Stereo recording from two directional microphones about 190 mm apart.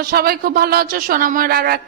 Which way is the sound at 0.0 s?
50° right (ahead or behind).